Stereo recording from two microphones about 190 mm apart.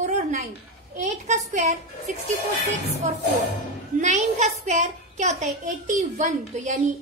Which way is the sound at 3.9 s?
40° right (ahead or behind).